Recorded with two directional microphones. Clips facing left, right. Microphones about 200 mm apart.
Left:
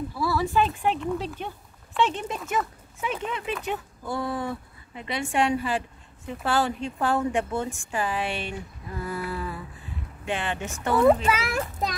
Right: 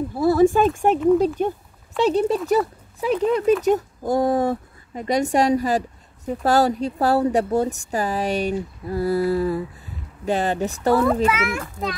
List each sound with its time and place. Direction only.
0.1 s a woman's voice: 50° right (ahead or behind)
11.2 s a child's voice: 30° left (ahead or behind)